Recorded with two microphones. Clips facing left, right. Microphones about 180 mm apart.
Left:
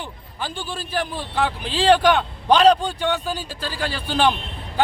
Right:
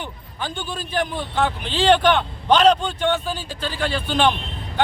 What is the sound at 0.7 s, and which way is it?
Speech, 5° left (ahead or behind).